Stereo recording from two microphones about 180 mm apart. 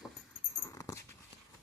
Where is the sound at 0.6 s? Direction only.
15° left (ahead or behind).